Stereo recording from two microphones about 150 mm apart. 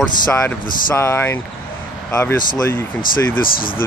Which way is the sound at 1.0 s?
15° left (ahead or behind).